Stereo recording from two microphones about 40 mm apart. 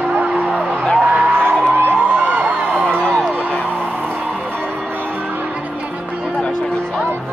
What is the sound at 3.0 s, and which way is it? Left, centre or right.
Music, left.